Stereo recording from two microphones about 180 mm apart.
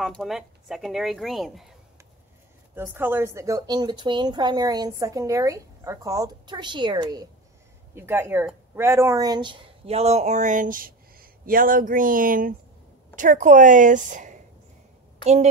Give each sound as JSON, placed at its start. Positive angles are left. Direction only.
{"t": 0.0, "sound": "speech", "side_deg": 0}
{"t": 2.7, "sound": "speech", "side_deg": -10}
{"t": 7.9, "sound": "a woman's voice", "side_deg": -15}